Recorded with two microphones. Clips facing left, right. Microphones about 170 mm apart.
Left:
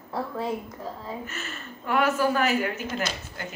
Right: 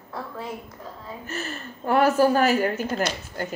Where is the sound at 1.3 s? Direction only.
35° right (ahead or behind).